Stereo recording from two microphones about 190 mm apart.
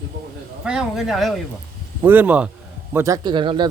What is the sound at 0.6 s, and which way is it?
Speech, 5° right (ahead or behind).